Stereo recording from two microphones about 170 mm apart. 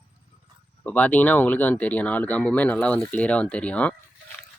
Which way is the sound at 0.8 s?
10° left (ahead or behind).